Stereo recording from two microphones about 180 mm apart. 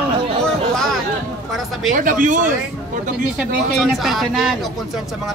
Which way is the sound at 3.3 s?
Centre (ahead or behind).